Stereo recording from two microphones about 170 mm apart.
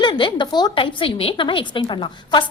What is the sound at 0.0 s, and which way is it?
A woman's voice, 25° left (ahead or behind).